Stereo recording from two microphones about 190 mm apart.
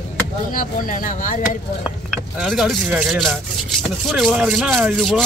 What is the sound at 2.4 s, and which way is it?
Speech, centre (ahead or behind).